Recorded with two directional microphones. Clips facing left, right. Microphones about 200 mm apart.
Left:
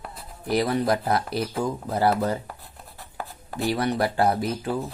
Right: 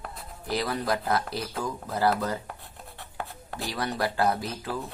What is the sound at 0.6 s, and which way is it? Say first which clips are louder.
Speech: left 6 dB; 25° left (ahead or behind).